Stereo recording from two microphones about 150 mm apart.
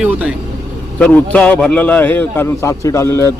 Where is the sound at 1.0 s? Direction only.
5° left (ahead or behind).